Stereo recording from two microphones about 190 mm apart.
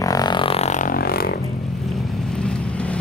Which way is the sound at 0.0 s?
20° left (ahead or behind).